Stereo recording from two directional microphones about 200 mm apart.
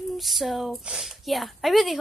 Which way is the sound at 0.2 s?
Centre (ahead or behind).